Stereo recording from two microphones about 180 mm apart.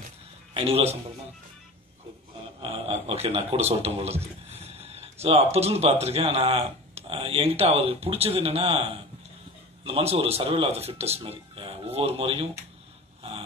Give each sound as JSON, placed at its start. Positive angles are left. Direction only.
{"t": 0.6, "sound": "speech", "side_deg": -35}
{"t": 2.6, "sound": "speech", "side_deg": -35}
{"t": 9.8, "sound": "speech", "side_deg": -35}